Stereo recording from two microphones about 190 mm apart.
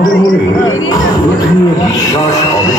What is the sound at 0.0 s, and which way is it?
Speech, 20° left (ahead or behind).